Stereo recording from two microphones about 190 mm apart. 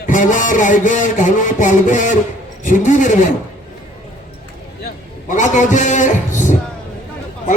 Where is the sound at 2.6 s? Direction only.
40° left (ahead or behind).